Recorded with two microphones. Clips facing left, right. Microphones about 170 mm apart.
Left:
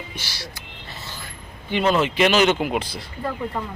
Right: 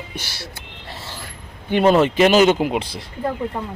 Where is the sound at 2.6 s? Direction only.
25° right (ahead or behind).